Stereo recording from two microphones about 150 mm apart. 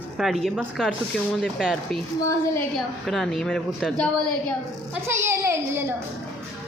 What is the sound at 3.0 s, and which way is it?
Speech, centre (ahead or behind).